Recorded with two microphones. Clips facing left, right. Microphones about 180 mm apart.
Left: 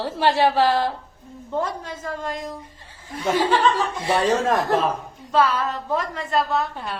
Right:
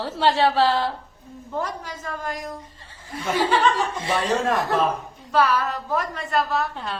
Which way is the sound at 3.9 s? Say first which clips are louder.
Left 3 dB; 35° left (ahead or behind).